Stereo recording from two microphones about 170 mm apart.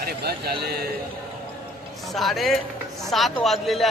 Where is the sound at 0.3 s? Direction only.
65° right (ahead or behind).